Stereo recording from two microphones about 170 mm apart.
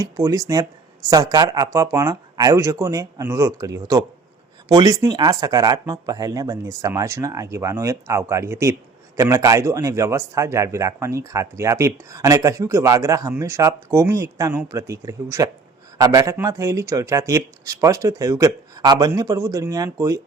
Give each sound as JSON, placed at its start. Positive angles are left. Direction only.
{"t": 0.0, "sound": "a man's voice", "side_deg": -20}